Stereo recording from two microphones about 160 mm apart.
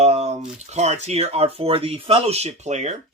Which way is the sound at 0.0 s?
40° right (ahead or behind).